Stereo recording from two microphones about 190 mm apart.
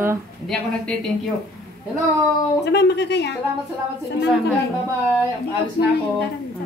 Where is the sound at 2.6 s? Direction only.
60° left (ahead or behind).